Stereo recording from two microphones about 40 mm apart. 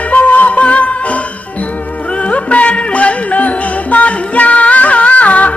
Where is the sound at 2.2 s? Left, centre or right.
Left.